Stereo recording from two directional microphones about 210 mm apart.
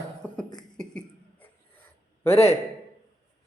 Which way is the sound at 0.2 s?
5° left (ahead or behind).